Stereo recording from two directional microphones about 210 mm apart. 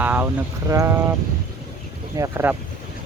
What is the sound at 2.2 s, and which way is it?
Speech, 10° right (ahead or behind).